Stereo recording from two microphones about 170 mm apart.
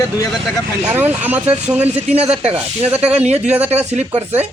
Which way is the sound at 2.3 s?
40° right (ahead or behind).